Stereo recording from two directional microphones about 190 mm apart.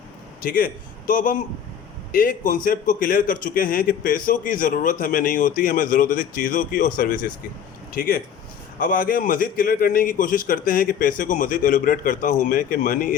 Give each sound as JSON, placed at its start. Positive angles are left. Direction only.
{"t": 0.4, "sound": "a man's voice", "side_deg": 45}